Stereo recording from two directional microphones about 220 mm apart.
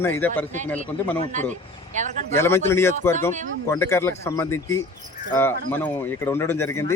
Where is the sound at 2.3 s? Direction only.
10° left (ahead or behind).